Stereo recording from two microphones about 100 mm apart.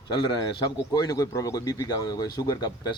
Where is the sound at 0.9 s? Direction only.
35° left (ahead or behind).